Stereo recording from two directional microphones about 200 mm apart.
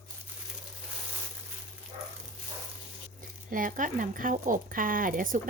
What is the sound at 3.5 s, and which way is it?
Speech, 40° right (ahead or behind).